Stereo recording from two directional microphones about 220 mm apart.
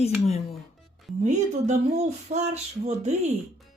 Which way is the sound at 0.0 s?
30° left (ahead or behind).